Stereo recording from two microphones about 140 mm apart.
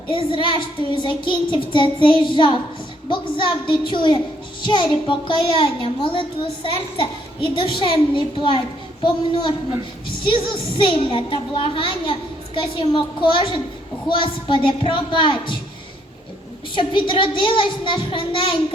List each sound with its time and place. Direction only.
0.2 s a child's voice: 35° left (ahead or behind)
16.7 s a child's voice: 35° left (ahead or behind)